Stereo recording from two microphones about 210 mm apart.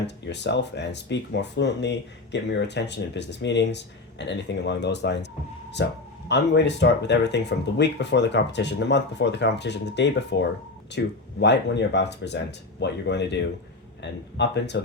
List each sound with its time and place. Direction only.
0.3 s speech: 55° left (ahead or behind)